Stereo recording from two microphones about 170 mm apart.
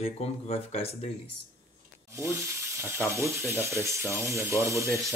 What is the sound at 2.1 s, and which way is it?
Rub, 15° right (ahead or behind).